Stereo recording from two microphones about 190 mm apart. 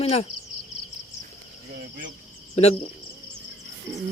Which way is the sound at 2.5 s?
35° left (ahead or behind).